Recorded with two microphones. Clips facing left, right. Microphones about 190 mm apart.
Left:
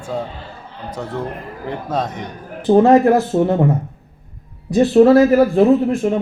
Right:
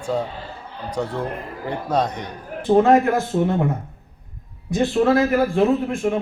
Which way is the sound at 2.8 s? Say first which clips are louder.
Left 5 dB; 35° left (ahead or behind).